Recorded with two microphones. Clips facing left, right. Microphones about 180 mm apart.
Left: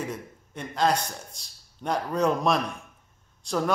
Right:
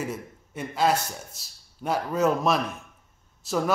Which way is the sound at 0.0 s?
5° right (ahead or behind).